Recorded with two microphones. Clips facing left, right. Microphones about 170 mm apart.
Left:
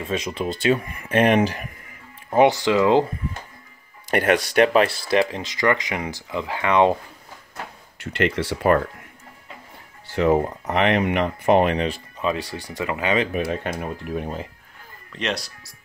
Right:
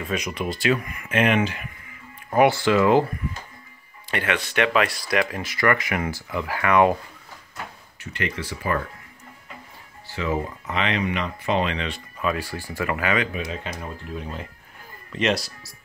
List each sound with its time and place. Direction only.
0.0 s speech: 25° left (ahead or behind)
2.3 s speech: 20° left (ahead or behind)
4.1 s speech: 45° left (ahead or behind); by 7.0 s 25° left (ahead or behind)
8.1 s speech: 75° left (ahead or behind)
10.1 s speech: 60° left (ahead or behind)
12.2 s speech: 20° left (ahead or behind)
13.5 s speech: 60° left (ahead or behind)
15.1 s speech: 5° right (ahead or behind)